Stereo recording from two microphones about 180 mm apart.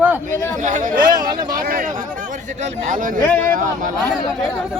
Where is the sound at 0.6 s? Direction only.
45° right (ahead or behind).